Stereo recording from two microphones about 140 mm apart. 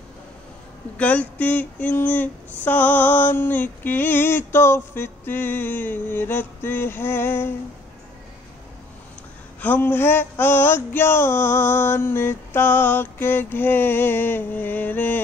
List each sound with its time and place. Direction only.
0.9 s female singing: 10° left (ahead or behind)
9.6 s female singing: 15° left (ahead or behind)